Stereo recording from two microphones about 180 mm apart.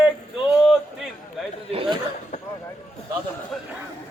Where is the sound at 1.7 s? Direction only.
30° right (ahead or behind).